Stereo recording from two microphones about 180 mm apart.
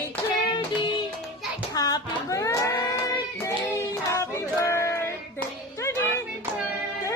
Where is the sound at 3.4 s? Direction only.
15° left (ahead or behind).